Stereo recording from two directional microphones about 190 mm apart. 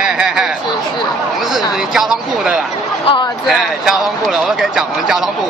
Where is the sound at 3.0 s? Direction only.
25° left (ahead or behind).